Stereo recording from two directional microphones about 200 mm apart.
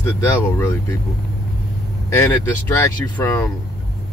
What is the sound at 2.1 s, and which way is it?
Speech, 10° left (ahead or behind).